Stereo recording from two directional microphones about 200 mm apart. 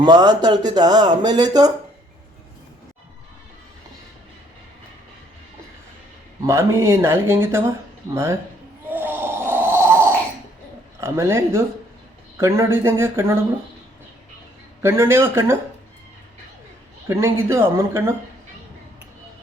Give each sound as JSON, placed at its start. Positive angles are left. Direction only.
{"t": 0.0, "sound": "speech", "side_deg": -20}
{"t": 6.4, "sound": "speech", "side_deg": -15}
{"t": 8.9, "sound": "a sound", "side_deg": -10}
{"t": 11.0, "sound": "speech", "side_deg": -15}
{"t": 14.8, "sound": "speech", "side_deg": -10}
{"t": 17.1, "sound": "speech", "side_deg": -15}